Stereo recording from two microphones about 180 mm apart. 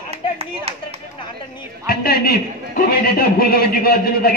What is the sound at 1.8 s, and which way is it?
A man's voice, 55° left (ahead or behind).